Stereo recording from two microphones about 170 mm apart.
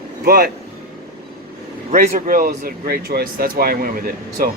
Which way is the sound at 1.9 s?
55° right (ahead or behind).